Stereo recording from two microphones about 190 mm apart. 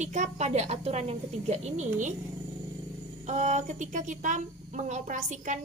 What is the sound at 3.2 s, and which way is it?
A woman's voice, 40° right (ahead or behind).